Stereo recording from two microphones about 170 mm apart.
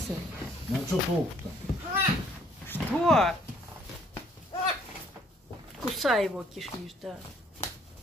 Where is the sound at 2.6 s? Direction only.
10° left (ahead or behind).